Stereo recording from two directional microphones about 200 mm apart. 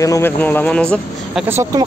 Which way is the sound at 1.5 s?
15° right (ahead or behind).